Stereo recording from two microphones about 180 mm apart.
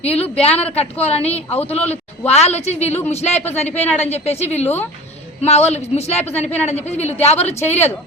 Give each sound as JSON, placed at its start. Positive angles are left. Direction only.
{"t": 0.0, "sound": "a woman's voice", "side_deg": 35}
{"t": 3.7, "sound": "speech", "side_deg": 10}
{"t": 3.9, "sound": "a woman's voice", "side_deg": 35}
{"t": 4.6, "sound": "speech", "side_deg": 10}
{"t": 5.4, "sound": "a woman's voice", "side_deg": 35}